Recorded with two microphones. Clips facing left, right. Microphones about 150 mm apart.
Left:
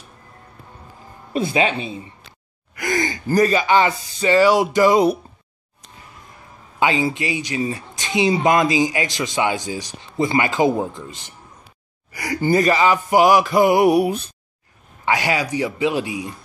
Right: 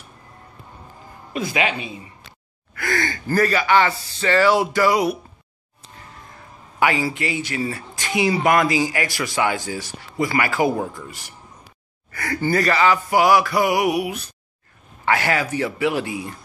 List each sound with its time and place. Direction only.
1.3 s speech: 30° left (ahead or behind)
2.7 s speech: 15° left (ahead or behind)
6.8 s speech: 20° left (ahead or behind)
15.0 s speech: 15° left (ahead or behind)